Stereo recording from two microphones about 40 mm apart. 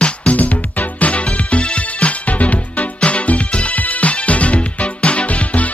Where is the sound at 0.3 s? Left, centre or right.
Left.